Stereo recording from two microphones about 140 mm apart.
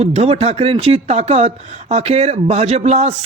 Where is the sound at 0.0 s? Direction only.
50° right (ahead or behind).